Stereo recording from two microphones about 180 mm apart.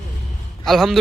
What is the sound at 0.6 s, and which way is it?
Speech, centre (ahead or behind).